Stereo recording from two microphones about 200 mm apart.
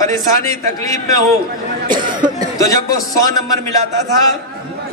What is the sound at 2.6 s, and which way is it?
Speech, 15° left (ahead or behind).